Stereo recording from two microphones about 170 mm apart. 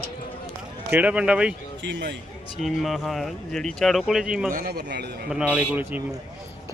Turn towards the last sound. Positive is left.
turn(degrees=-10)  # may be behind; listen again after turning